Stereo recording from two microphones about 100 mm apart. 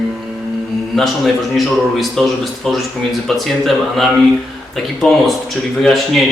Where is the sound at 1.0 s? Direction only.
Centre (ahead or behind).